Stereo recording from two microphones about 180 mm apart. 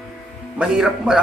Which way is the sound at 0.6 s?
5° right (ahead or behind).